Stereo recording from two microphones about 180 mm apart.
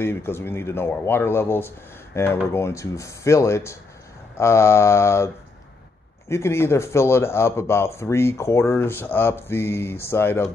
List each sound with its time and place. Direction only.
0.0 s speech: 15° left (ahead or behind)